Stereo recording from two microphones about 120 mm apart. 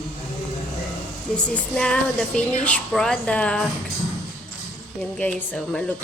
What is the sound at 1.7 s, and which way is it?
Speech, 5° left (ahead or behind).